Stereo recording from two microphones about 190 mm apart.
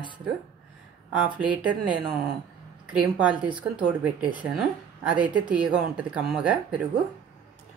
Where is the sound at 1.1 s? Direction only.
5° right (ahead or behind).